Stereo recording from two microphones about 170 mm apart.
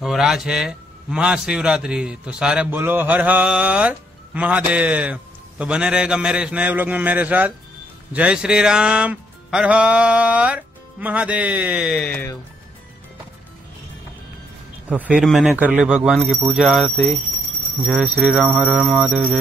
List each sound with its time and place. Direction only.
0.0 s a man's voice: centre (ahead or behind)
14.9 s speech: 10° right (ahead or behind)